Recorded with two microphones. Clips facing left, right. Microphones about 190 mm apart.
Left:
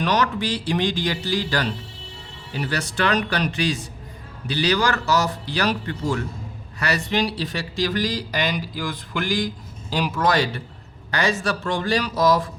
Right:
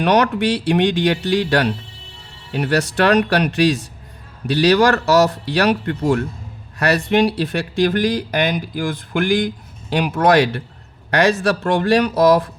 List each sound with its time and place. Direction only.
0.0 s speech: 65° right (ahead or behind)